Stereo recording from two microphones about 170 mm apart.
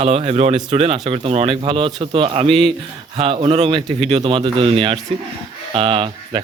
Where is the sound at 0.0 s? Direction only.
35° right (ahead or behind).